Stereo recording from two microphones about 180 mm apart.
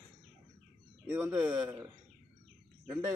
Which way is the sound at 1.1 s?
5° right (ahead or behind).